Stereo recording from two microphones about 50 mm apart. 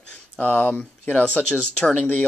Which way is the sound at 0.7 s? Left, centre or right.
Left.